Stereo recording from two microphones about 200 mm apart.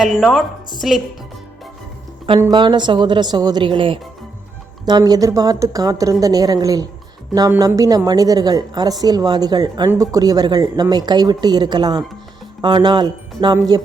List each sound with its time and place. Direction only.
0.0 s a woman's voice: centre (ahead or behind)
2.4 s a woman's voice: 20° right (ahead or behind)